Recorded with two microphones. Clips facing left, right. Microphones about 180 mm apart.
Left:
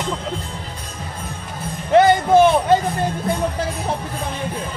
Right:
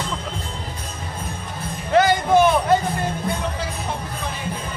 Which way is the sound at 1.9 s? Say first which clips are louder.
Left 3 dB; 25° left (ahead or behind).